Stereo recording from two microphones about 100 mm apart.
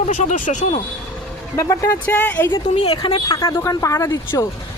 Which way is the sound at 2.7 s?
75° left (ahead or behind).